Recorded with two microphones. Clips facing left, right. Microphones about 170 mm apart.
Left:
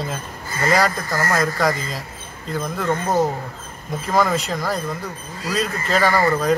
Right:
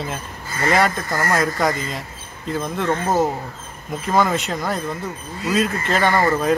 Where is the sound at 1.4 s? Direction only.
Centre (ahead or behind).